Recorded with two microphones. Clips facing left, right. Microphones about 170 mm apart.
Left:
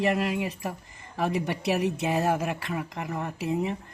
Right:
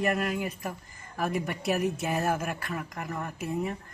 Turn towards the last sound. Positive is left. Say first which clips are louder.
# left 3 dB
turn(degrees=20)  # may be behind; listen again after turning